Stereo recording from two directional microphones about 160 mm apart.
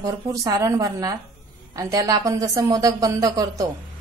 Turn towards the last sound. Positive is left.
turn(degrees=-25)  # may be behind; listen again after turning